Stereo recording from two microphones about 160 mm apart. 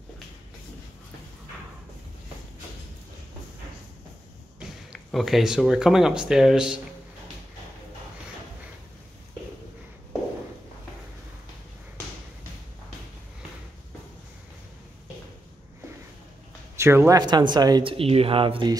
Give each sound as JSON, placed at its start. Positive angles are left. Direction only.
{"t": 5.1, "sound": "speech", "side_deg": 0}
{"t": 16.7, "sound": "speech", "side_deg": -15}